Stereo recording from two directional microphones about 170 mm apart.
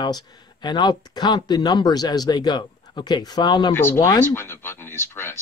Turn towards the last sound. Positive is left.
turn(degrees=15)  # may be behind; listen again after turning